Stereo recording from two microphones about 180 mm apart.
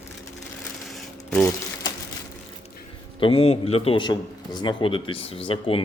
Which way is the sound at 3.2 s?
30° left (ahead or behind).